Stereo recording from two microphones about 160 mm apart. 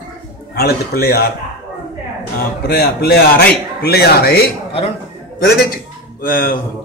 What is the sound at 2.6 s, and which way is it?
A man's voice, 75° left (ahead or behind).